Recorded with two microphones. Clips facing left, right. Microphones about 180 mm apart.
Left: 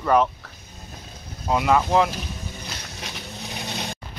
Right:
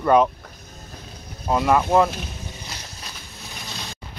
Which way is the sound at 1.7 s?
5° right (ahead or behind).